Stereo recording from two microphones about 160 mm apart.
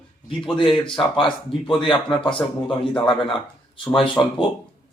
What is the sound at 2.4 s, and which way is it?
Speech, 15° left (ahead or behind).